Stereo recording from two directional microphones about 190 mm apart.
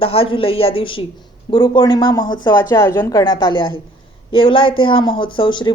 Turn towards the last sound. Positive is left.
turn(degrees=25)  # may be behind; listen again after turning